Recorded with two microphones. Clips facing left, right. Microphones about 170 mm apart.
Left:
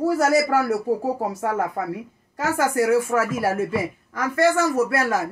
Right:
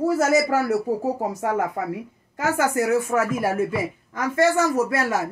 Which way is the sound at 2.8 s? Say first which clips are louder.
Left 4 dB; 20° right (ahead or behind).